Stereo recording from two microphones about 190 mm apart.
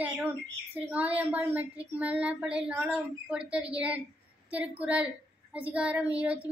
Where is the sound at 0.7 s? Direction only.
10° right (ahead or behind).